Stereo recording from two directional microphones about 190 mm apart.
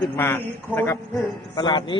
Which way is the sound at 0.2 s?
10° left (ahead or behind).